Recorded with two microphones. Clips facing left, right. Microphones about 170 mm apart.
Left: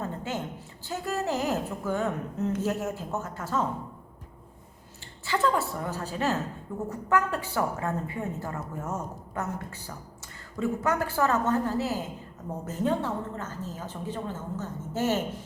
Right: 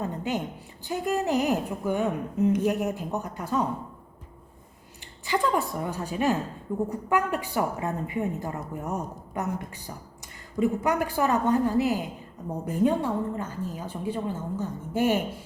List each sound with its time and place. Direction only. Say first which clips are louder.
0.0 s a sound: right 3 dB; 15° right (ahead or behind)
0.9 s a woman's voice: right 4 dB; 15° right (ahead or behind)
5.2 s a woman's voice: right 1 dB; 15° right (ahead or behind)